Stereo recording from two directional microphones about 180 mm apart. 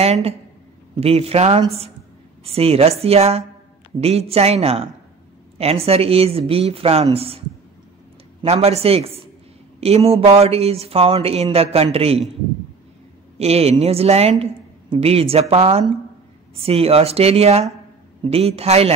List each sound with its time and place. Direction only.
0.0 s speech: 35° right (ahead or behind)
8.4 s speech: 35° right (ahead or behind)
13.4 s speech: 35° right (ahead or behind)